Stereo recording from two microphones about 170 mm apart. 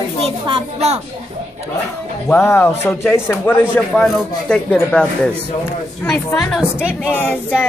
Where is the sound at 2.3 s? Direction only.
15° left (ahead or behind).